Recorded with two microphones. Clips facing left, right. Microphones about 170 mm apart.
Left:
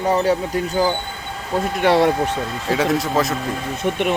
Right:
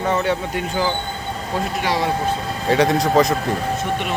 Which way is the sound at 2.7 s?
5° left (ahead or behind).